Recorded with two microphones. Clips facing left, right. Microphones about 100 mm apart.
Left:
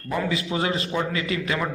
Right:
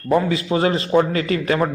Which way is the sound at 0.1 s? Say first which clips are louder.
Right 8 dB; 40° right (ahead or behind).